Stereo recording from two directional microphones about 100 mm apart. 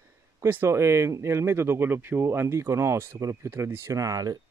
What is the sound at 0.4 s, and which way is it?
Speech, 25° right (ahead or behind).